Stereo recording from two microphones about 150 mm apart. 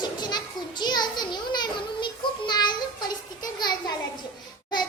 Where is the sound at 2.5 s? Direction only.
30° left (ahead or behind).